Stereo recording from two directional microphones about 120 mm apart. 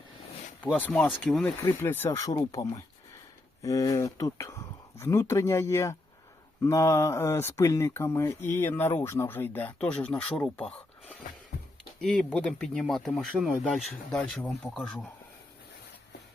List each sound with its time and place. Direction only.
0.6 s speech: 10° left (ahead or behind)
1.8 s speech: 20° left (ahead or behind)
10.6 s a sound: 10° left (ahead or behind)
11.9 s speech: 10° left (ahead or behind)